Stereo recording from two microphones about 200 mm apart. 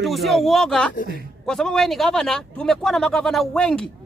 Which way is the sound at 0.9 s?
45° left (ahead or behind).